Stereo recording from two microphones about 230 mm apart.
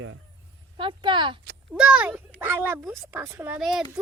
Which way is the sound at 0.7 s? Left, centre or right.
Right.